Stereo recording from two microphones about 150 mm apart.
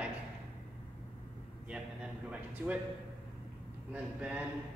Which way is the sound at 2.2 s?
10° right (ahead or behind).